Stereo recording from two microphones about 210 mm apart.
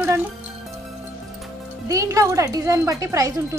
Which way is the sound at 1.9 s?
15° right (ahead or behind).